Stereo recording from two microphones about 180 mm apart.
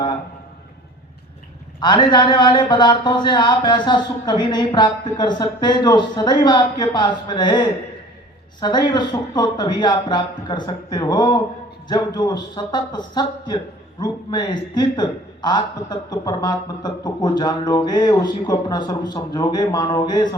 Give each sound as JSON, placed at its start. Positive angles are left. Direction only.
{"t": 1.8, "sound": "a man's voice", "side_deg": 25}